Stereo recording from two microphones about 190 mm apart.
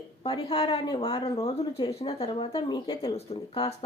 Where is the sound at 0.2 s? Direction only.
25° left (ahead or behind).